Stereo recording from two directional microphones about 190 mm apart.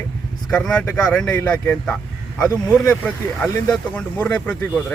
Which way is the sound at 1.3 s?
15° left (ahead or behind).